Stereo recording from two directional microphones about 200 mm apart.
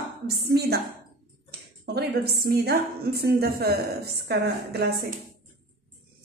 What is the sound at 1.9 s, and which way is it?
A woman's voice, 55° right (ahead or behind).